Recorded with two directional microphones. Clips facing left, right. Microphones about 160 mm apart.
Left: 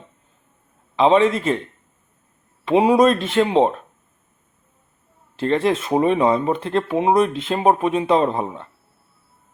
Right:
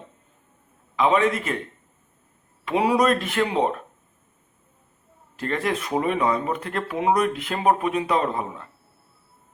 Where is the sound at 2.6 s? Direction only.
25° left (ahead or behind).